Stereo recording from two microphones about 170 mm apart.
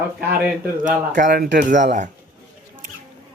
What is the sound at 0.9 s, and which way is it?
Speech, 50° right (ahead or behind).